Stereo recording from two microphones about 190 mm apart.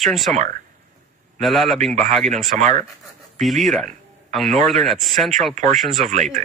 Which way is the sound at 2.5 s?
40° right (ahead or behind).